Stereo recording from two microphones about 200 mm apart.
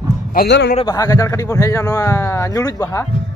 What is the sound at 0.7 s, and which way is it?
Speech, 20° left (ahead or behind).